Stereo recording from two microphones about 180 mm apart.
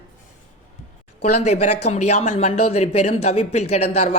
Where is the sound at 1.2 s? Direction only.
40° left (ahead or behind).